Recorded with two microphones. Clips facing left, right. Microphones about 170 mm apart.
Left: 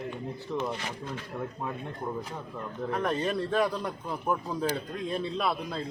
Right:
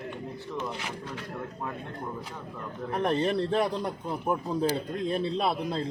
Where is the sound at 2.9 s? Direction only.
25° right (ahead or behind).